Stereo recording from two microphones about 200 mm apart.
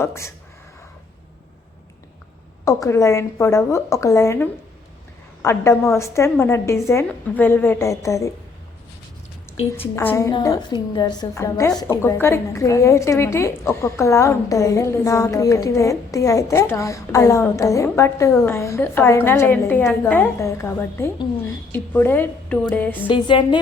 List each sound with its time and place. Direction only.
0.0 s a woman's voice: 15° left (ahead or behind)
2.6 s a woman's voice: 15° left (ahead or behind)
9.9 s a woman's voice: 10° left (ahead or behind)
23.0 s music: 25° left (ahead or behind)